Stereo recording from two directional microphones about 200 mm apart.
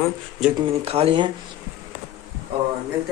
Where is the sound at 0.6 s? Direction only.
30° right (ahead or behind).